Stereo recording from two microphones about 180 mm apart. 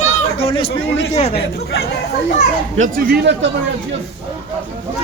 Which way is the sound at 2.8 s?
50° right (ahead or behind).